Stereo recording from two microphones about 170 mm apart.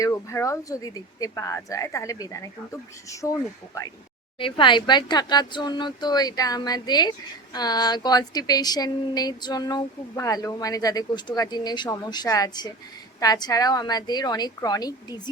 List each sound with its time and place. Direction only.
0.0 s speech: 20° left (ahead or behind)
4.4 s speech: 30° left (ahead or behind)